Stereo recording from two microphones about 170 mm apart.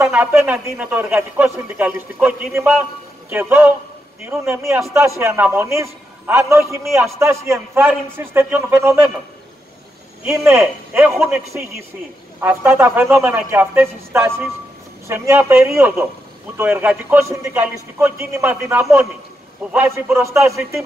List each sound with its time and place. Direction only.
0.0 s speech: 15° right (ahead or behind)
10.2 s speech: 15° right (ahead or behind)